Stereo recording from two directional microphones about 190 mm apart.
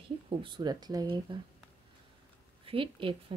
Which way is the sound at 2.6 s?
30° right (ahead or behind).